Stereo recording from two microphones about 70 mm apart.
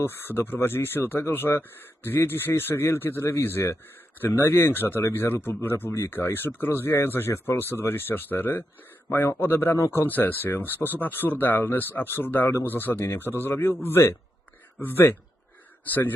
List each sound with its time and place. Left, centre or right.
0.0 s speech: left
9.0 s speech: left
10.1 s speech: left
10.7 s speech: right
11.0 s speech: left